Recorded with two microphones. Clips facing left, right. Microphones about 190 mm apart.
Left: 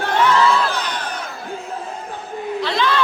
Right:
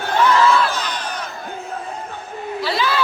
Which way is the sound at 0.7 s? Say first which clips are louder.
Left 1 dB; 60° left (ahead or behind).